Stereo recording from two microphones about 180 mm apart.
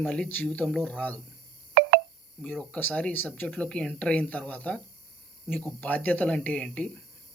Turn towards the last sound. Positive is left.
turn(degrees=5)  # may be behind; listen again after turning